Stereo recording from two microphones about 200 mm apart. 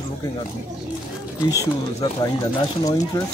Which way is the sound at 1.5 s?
20° left (ahead or behind).